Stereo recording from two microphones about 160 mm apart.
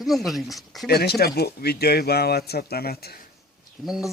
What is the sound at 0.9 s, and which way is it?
Speech, 80° left.